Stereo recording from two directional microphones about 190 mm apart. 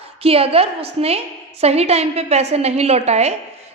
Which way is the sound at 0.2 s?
30° right (ahead or behind).